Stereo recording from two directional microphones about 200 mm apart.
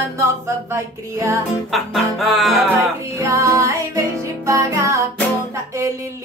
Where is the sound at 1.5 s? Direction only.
Centre (ahead or behind).